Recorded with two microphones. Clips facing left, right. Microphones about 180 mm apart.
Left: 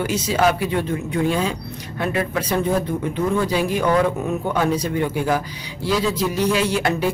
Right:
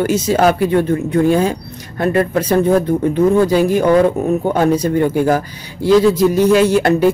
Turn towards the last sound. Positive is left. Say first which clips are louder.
# right 8 dB
turn(degrees=-45)  # may be behind; listen again after turning